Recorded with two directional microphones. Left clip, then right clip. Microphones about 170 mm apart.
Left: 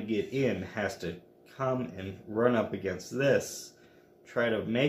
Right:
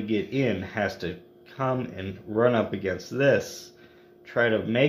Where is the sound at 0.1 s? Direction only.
40° right (ahead or behind).